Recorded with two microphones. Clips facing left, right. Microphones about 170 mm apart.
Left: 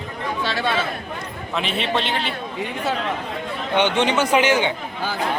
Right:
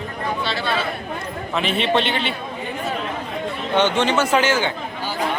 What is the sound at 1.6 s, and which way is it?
Speech, centre (ahead or behind).